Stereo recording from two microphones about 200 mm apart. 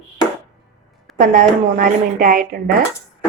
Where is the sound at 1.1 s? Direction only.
45° right (ahead or behind).